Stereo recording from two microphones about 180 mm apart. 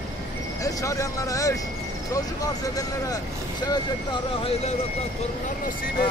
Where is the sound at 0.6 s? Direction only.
20° left (ahead or behind).